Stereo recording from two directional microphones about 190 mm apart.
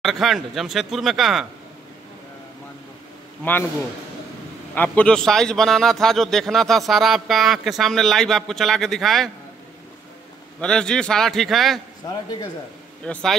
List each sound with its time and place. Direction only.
0.0 s a man's voice: centre (ahead or behind)
4.7 s a man's voice: 5° left (ahead or behind)
10.6 s a man's voice: 5° left (ahead or behind)
12.0 s speech: 15° left (ahead or behind)
13.0 s a man's voice: 5° left (ahead or behind)